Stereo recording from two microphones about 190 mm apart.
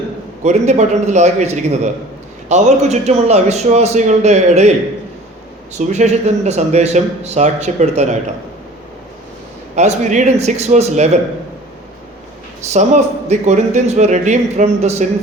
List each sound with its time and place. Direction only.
0.4 s speech: 35° right (ahead or behind)
5.7 s speech: 35° right (ahead or behind)
9.7 s speech: 40° right (ahead or behind)
12.7 s speech: 35° right (ahead or behind)